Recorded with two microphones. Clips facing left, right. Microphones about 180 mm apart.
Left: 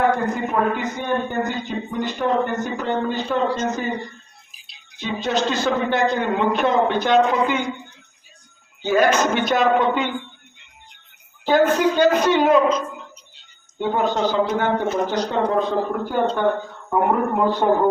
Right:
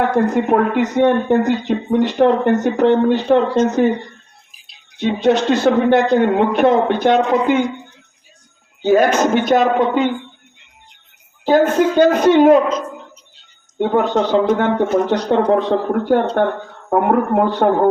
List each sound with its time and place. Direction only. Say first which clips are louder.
0.3 s a man's voice: right 7 dB; 75° right (ahead or behind)
4.9 s speech: right 8 dB; 65° right (ahead or behind)
8.8 s a woman's voice: right 4 dB; 45° right (ahead or behind)
11.4 s a woman's voice: right 3 dB; 45° right (ahead or behind)
13.7 s speech: right 5 dB; 60° right (ahead or behind)